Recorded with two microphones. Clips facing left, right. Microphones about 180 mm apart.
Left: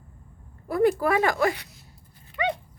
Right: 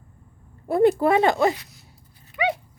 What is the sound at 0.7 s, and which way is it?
Speech, 25° right (ahead or behind).